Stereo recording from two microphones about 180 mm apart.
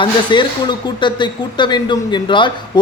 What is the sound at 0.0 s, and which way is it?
Speech, 25° left (ahead or behind).